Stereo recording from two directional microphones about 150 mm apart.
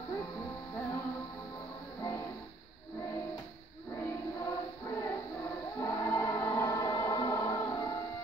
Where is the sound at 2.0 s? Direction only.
20° left (ahead or behind).